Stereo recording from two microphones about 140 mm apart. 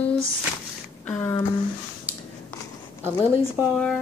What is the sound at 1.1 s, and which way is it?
Speech, 15° left (ahead or behind).